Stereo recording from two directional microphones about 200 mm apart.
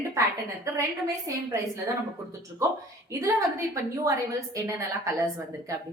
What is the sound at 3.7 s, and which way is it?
A woman's voice, 15° right (ahead or behind).